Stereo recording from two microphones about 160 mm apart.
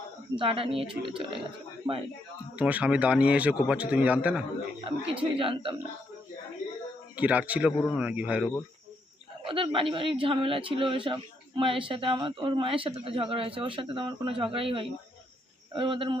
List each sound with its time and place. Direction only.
0.3 s speech: 35° right (ahead or behind)
2.6 s speech: 10° right (ahead or behind)
4.9 s speech: 35° right (ahead or behind)
7.2 s speech: 10° right (ahead or behind)
9.4 s speech: 35° right (ahead or behind)